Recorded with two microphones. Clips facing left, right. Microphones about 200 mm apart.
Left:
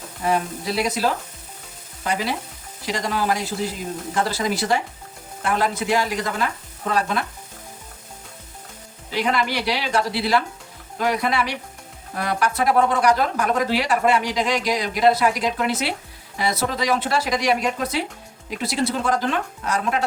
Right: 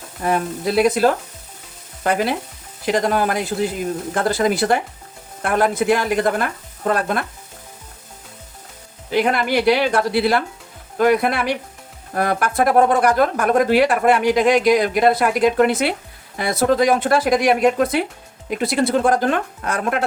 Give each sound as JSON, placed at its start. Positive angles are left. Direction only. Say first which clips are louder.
{"t": 0.3, "sound": "speech", "louder": "right 3 dB", "side_deg": -55}
{"t": 9.1, "sound": "speech", "louder": "right 5 dB", "side_deg": -55}